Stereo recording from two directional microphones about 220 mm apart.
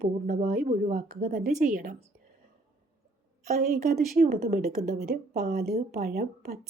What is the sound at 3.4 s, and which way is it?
A woman's voice, 35° right (ahead or behind).